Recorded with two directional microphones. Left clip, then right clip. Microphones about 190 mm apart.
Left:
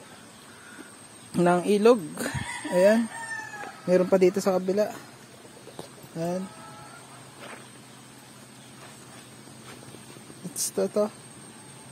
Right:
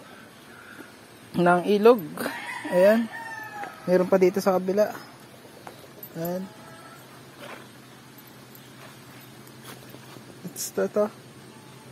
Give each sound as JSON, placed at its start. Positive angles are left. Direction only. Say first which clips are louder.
{"t": 1.3, "sound": "speech", "louder": "right 2 dB", "side_deg": 15}
{"t": 6.1, "sound": "speech", "louder": "left 1 dB", "side_deg": 30}
{"t": 10.5, "sound": "speech", "louder": "right 1 dB", "side_deg": 20}